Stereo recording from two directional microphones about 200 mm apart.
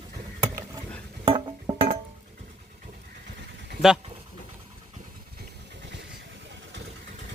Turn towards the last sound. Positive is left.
turn(degrees=-65)  # may be behind; listen again after turning